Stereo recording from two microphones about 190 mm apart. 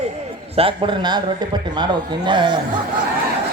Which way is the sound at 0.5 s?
25° right (ahead or behind).